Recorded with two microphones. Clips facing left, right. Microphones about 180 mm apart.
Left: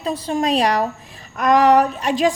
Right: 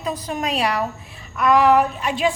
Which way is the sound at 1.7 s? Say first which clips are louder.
Left 2 dB; 40° left (ahead or behind).